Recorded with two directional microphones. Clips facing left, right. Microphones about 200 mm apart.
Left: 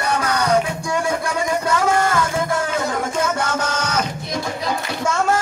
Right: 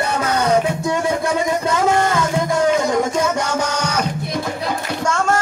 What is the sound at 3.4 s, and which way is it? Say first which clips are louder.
Music: right 2 dB; 15° right (ahead or behind).